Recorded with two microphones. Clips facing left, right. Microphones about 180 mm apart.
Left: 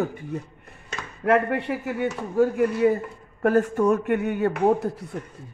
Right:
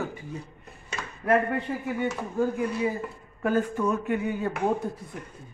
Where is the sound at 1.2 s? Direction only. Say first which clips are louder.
Left 3 dB; 75° left (ahead or behind).